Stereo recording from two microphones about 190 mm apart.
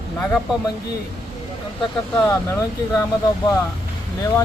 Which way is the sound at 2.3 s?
20° left (ahead or behind).